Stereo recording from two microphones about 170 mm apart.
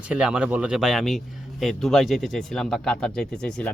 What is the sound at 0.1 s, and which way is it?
Speech, 5° right (ahead or behind).